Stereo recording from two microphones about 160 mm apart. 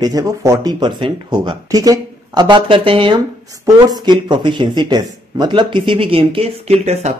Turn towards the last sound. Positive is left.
turn(degrees=-40)  # may be behind; listen again after turning